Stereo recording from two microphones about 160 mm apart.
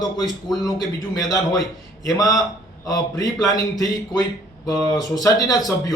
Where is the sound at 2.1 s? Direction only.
20° left (ahead or behind).